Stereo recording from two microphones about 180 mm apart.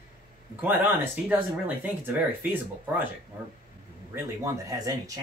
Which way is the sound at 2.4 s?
10° right (ahead or behind).